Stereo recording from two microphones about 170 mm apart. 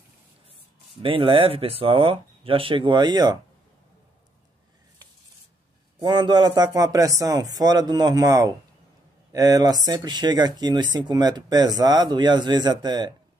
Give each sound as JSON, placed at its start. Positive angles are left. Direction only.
{"t": 1.0, "sound": "speech", "side_deg": -30}
{"t": 5.9, "sound": "speech", "side_deg": -30}